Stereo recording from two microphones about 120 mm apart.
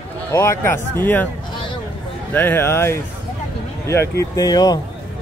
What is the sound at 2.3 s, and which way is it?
Speech, 15° left (ahead or behind).